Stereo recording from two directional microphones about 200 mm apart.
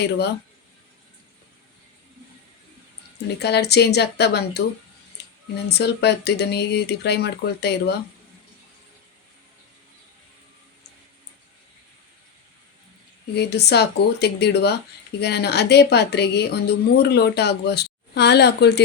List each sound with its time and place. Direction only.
3.2 s speech: 55° left (ahead or behind)
5.2 s a sound: 55° left (ahead or behind)
5.6 s speech: 55° left (ahead or behind)
13.3 s speech: 55° left (ahead or behind)